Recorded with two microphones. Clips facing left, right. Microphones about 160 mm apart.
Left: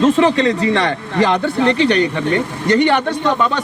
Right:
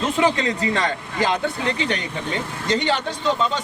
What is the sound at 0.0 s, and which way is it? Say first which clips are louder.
A man's voice: left 8 dB; 75° left (ahead or behind).